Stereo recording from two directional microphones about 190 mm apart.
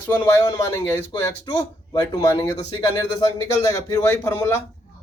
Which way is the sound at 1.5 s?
25° left (ahead or behind).